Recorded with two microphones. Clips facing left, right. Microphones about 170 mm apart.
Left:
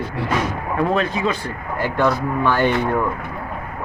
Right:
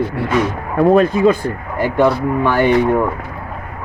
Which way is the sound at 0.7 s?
45° right (ahead or behind).